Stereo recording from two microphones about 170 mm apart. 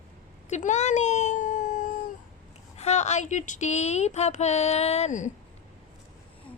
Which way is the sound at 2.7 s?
40° left (ahead or behind).